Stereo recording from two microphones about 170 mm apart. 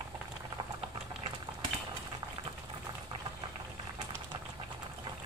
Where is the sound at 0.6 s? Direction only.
30° right (ahead or behind).